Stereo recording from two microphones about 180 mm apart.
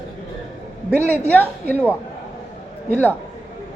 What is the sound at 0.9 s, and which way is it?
Speech, 10° left (ahead or behind).